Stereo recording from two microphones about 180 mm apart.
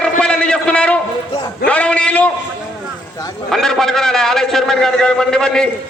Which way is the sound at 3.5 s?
5° left (ahead or behind).